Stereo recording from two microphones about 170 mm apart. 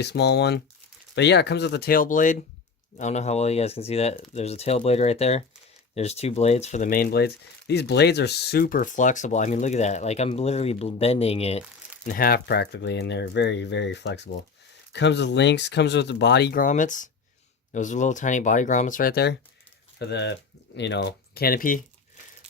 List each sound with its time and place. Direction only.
0.0 s speech: 85° left; by 11.6 s 35° left (ahead or behind)
12.0 s speech: 60° left (ahead or behind)